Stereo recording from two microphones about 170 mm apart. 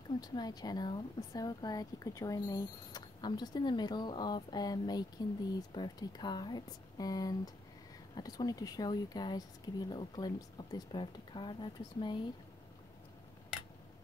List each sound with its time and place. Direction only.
0.2 s speech: 25° left (ahead or behind)